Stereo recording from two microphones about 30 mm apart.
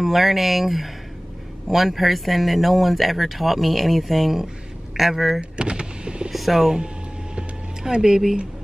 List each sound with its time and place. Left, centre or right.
0.0 s speech: centre
5.4 s power windows: right
6.3 s speech: centre
7.8 s speech: centre